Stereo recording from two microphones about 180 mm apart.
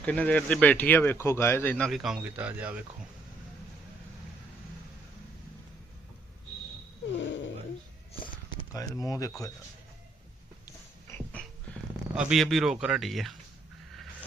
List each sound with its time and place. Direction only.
0.0 s speech: 5° left (ahead or behind); by 2.8 s 10° right (ahead or behind)
7.2 s a sound: 90° left
8.7 s speech: 20° left (ahead or behind)
12.1 s speech: 5° right (ahead or behind)